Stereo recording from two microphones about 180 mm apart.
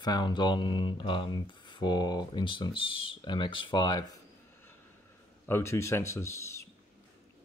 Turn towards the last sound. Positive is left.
turn(degrees=15)  # may be behind; listen again after turning